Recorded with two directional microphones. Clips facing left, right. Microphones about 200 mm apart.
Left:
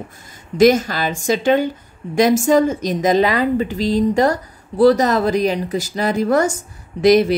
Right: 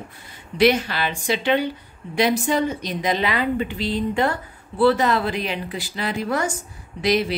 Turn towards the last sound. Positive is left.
turn(degrees=45)  # may be behind; listen again after turning